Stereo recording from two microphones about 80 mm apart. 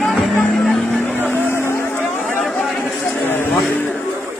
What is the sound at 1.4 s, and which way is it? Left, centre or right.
Music, left.